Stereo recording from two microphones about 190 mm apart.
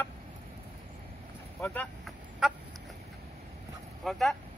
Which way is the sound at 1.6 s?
5° left (ahead or behind).